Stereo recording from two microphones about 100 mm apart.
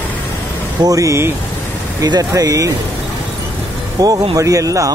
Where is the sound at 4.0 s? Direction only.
40° right (ahead or behind).